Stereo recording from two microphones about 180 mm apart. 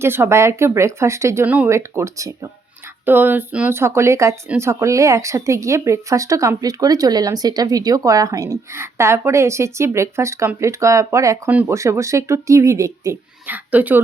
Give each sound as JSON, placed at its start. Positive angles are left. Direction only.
{"t": 0.0, "sound": "speech", "side_deg": -15}